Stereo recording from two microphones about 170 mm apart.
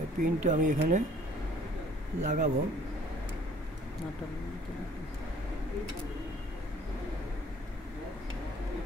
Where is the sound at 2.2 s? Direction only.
45° right (ahead or behind).